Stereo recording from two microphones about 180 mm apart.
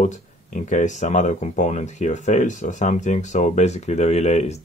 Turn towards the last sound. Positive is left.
turn(degrees=40)  # may be behind; listen again after turning